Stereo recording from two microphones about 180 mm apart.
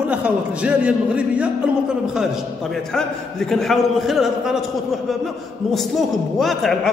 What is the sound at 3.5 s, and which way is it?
A man's voice, centre (ahead or behind).